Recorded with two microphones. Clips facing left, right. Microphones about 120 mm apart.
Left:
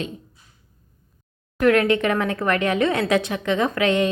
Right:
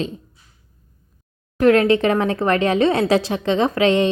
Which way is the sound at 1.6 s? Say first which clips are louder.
Right 3 dB; 30° right (ahead or behind).